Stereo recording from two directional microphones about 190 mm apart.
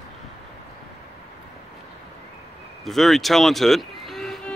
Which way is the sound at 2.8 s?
Centre (ahead or behind).